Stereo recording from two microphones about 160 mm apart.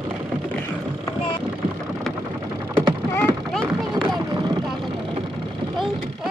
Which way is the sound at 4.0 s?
25° right (ahead or behind).